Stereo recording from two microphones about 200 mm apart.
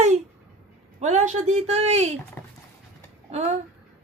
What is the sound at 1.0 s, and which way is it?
A woman's voice, 35° right (ahead or behind).